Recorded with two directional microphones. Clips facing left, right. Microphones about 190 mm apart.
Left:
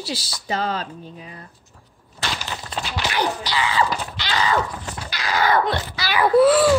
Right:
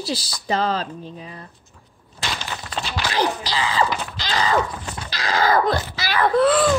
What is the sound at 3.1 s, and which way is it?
Speech, 35° right (ahead or behind).